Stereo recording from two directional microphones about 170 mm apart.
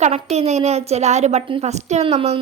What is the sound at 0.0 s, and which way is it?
Speech, 40° right (ahead or behind).